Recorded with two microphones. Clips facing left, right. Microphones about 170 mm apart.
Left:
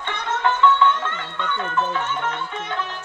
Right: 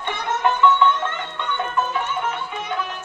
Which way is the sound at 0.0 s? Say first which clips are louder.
Right 1 dB; 15° right (ahead or behind).